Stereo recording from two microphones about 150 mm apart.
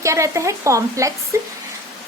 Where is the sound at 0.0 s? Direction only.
20° right (ahead or behind).